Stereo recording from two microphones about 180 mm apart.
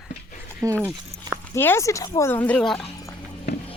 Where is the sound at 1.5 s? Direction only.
15° left (ahead or behind).